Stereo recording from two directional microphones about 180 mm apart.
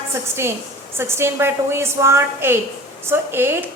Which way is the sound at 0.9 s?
15° right (ahead or behind).